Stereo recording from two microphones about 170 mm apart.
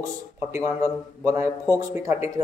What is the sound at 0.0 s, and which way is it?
A man's voice, 15° right (ahead or behind).